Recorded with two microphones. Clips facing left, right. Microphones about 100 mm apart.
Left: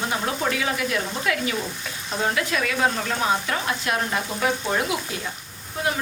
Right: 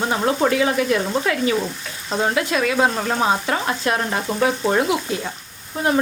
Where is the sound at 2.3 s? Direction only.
30° right (ahead or behind).